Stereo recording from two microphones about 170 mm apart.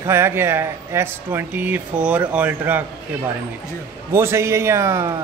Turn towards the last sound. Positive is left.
turn(degrees=-15)  # may be behind; listen again after turning